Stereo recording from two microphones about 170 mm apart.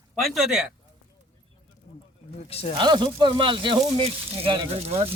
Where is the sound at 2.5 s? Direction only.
35° left (ahead or behind).